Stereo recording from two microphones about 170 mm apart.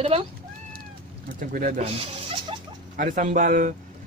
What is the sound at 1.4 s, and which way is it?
Speech, 55° right (ahead or behind).